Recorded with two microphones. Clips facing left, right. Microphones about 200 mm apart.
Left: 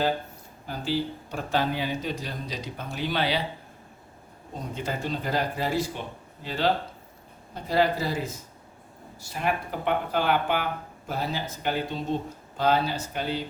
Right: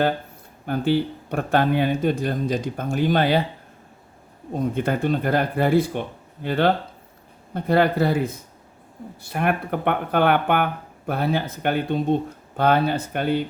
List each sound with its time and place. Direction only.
0.6 s speech: 60° right (ahead or behind)
4.5 s speech: 55° right (ahead or behind)